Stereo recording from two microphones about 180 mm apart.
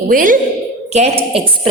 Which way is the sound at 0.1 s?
50° right (ahead or behind).